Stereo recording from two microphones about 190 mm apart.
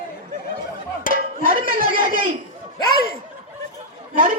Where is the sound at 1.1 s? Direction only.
45° right (ahead or behind).